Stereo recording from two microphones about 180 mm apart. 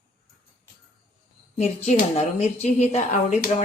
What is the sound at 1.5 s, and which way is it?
Speech, 40° left (ahead or behind).